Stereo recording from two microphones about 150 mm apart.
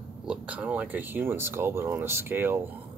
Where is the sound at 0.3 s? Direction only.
10° right (ahead or behind).